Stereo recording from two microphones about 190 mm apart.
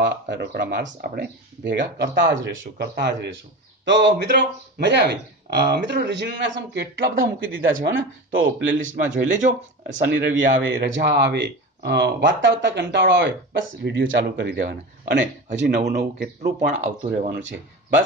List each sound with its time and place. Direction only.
0.0 s a sound: 65° right (ahead or behind)
0.6 s a man's voice: 65° right (ahead or behind); by 8.4 s 85° right
8.8 s speech: 40° right (ahead or behind)
10.0 s a man's voice: 75° right (ahead or behind); by 16.7 s 60° right (ahead or behind)
17.3 s speech: 75° right (ahead or behind)